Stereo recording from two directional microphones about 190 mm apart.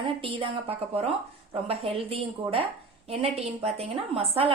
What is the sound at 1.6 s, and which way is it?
A woman's voice, 30° right (ahead or behind).